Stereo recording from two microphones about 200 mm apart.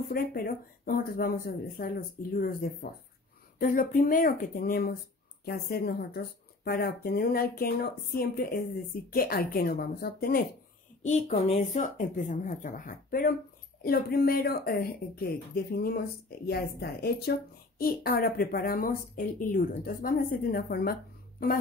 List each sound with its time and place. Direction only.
0.1 s speech: 50° left (ahead or behind)
11.0 s speech: 35° left (ahead or behind)